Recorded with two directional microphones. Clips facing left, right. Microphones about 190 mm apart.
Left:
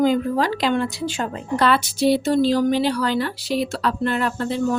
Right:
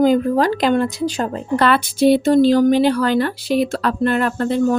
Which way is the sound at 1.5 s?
55° right (ahead or behind).